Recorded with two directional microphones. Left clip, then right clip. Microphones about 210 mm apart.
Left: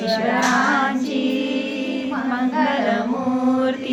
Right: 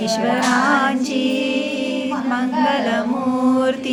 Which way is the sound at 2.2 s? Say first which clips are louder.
Right 1 dB; 20° right (ahead or behind).